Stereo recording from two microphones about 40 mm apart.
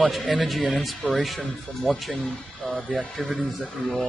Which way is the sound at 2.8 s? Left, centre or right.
Left.